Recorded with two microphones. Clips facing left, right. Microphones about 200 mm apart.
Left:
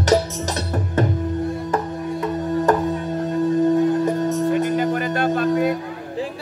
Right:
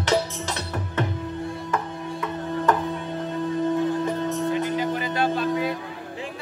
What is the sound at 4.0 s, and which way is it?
Music, 45° left (ahead or behind).